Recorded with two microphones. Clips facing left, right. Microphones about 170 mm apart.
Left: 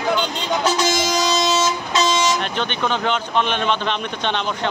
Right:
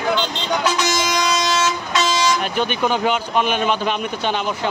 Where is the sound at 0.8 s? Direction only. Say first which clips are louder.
Left 1 dB; 30° left (ahead or behind).